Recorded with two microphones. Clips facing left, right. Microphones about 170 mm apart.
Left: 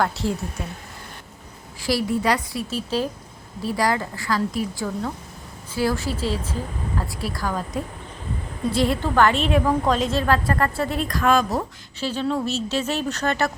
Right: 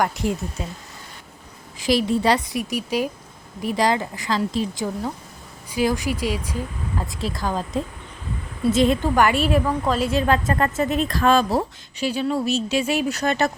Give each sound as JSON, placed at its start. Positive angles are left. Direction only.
{"t": 0.0, "sound": "speech", "side_deg": -15}
{"t": 1.8, "sound": "a woman's voice", "side_deg": -20}
{"t": 10.1, "sound": "a woman's voice", "side_deg": -15}
{"t": 11.9, "sound": "speech", "side_deg": -10}